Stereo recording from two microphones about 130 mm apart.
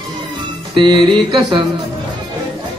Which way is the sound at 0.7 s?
35° right (ahead or behind).